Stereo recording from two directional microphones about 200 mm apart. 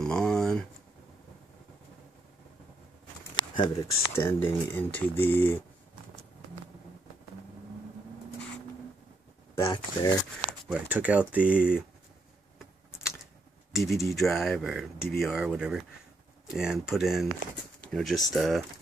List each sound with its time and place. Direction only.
0.0 s a sound: 5° left (ahead or behind)
3.3 s speech: 20° left (ahead or behind)
9.6 s speech: 15° left (ahead or behind)
10.7 s speech: 5° right (ahead or behind)
13.7 s speech: centre (ahead or behind)